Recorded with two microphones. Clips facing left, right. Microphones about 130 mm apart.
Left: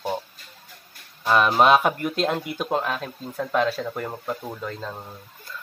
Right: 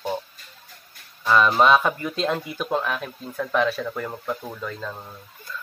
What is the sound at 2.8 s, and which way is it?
Speech, 30° left (ahead or behind).